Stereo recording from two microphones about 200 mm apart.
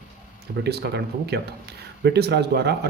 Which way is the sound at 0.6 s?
55° right (ahead or behind).